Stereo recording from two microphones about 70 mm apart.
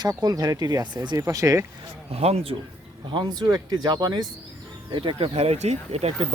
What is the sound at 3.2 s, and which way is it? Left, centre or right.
Speech, right.